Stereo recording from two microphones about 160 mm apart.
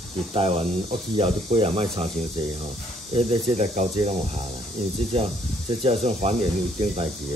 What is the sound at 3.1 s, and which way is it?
Speech, 40° right (ahead or behind).